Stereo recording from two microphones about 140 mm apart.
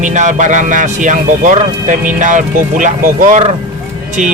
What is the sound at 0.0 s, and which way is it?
Speech, 60° right (ahead or behind).